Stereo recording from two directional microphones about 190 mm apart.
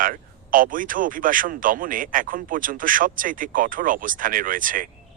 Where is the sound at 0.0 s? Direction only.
45° right (ahead or behind).